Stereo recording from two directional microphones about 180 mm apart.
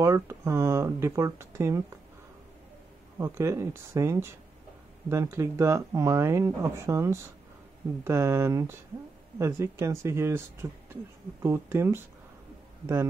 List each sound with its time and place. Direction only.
0.0 s speech: 15° right (ahead or behind)
3.2 s speech: 15° right (ahead or behind)